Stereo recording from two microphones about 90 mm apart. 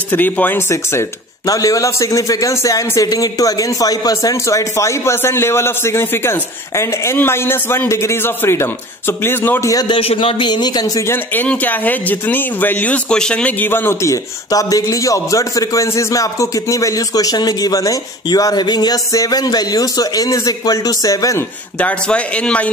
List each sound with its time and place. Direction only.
0.1 s a man's voice: 20° left (ahead or behind)
1.5 s a man's voice: 40° left (ahead or behind); by 9.7 s 25° left (ahead or behind)
9.8 s a man's voice: 75° left (ahead or behind); by 10.9 s 50° left (ahead or behind)
11.3 s speech: 20° left (ahead or behind); by 21.5 s 40° left (ahead or behind)
21.7 s a man's voice: 15° left (ahead or behind)